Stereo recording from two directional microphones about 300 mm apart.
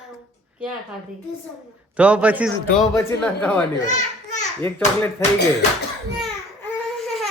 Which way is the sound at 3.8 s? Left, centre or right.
Left.